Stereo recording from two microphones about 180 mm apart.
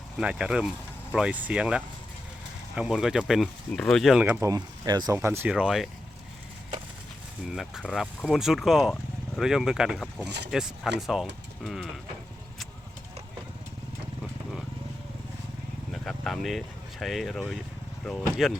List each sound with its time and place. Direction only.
0.2 s speech: 5° right (ahead or behind)
7.4 s speech: centre (ahead or behind)
10.2 s speech: 70° right (ahead or behind)
10.5 s speech: 5° right (ahead or behind)
11.6 s mechanisms: centre (ahead or behind)
15.9 s speech: centre (ahead or behind)